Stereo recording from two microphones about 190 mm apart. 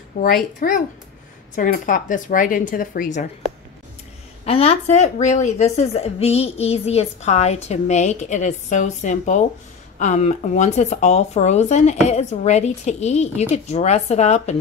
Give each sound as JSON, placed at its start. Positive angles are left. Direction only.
{"t": 0.2, "sound": "a woman's voice", "side_deg": 55}
{"t": 0.6, "sound": "speech", "side_deg": 40}
{"t": 4.5, "sound": "a woman's voice", "side_deg": 30}